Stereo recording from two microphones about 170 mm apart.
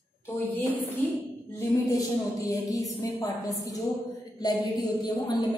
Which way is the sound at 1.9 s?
20° left (ahead or behind).